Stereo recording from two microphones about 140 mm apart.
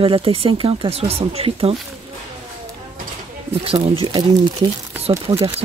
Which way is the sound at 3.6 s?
40° right (ahead or behind).